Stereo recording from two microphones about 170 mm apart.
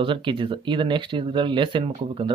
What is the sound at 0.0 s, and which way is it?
Speech, 30° right (ahead or behind).